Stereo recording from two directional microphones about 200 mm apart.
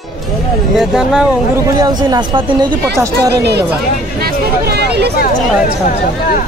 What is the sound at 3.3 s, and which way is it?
Speech, 55° right (ahead or behind).